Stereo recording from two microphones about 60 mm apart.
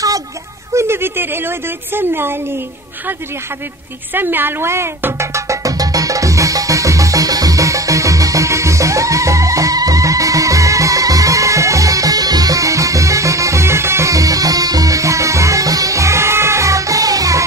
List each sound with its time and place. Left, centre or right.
0.7 s a woman's voice: right
4.1 s music: right